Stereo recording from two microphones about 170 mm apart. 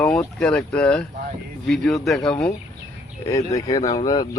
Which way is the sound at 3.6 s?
20° left (ahead or behind).